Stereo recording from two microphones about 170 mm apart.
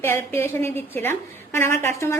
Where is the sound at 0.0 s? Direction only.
15° left (ahead or behind).